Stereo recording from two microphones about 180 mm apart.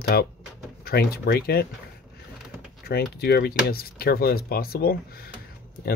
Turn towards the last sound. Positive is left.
turn(degrees=55)  # may be behind; listen again after turning